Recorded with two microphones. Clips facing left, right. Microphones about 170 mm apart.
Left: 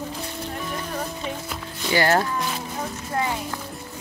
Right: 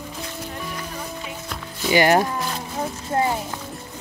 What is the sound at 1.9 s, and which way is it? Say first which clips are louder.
Speech: right 3 dB; 15° right (ahead or behind).